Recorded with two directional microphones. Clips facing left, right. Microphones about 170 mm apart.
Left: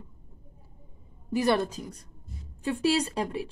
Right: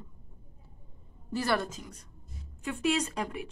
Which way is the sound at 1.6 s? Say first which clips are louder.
Left 6 dB; 35° left (ahead or behind).